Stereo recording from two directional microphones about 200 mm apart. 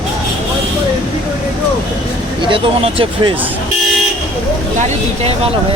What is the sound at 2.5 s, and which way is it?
Speech, 25° right (ahead or behind).